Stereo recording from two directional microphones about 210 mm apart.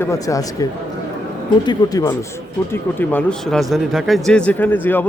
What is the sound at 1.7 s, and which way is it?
A man's voice, 15° left (ahead or behind).